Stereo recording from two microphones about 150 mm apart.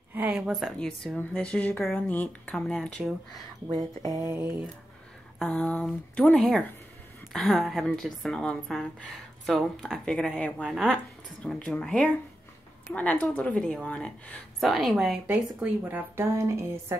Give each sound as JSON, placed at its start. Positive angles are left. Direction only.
{"t": 0.1, "sound": "a sound", "side_deg": -15}
{"t": 0.5, "sound": "speech", "side_deg": 0}
{"t": 4.2, "sound": "speech", "side_deg": -20}
{"t": 5.4, "sound": "speech", "side_deg": 5}
{"t": 15.2, "sound": "speech", "side_deg": -10}